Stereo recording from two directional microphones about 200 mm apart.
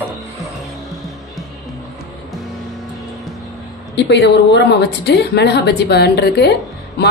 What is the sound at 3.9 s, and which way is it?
A woman's voice, 60° left (ahead or behind).